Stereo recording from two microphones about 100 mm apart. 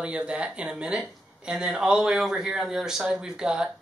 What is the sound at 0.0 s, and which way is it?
Speech, 10° right (ahead or behind).